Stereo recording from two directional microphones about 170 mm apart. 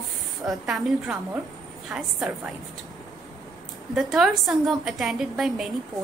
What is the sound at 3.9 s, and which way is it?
A woman's voice, centre (ahead or behind).